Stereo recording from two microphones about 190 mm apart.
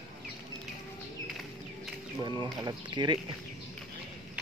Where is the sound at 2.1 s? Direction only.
25° right (ahead or behind).